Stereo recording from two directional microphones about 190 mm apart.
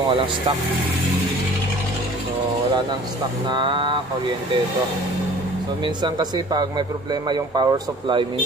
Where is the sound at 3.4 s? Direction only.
25° right (ahead or behind).